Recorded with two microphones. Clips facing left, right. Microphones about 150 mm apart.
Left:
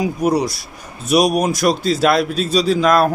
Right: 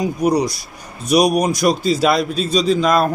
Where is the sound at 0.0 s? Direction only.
5° left (ahead or behind).